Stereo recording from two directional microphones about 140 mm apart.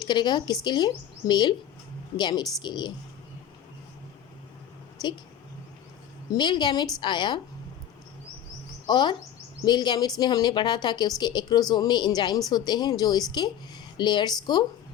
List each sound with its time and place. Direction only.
0.0 s a woman's voice: 30° left (ahead or behind)
6.3 s a woman's voice: 30° left (ahead or behind)
8.9 s a woman's voice: 30° left (ahead or behind)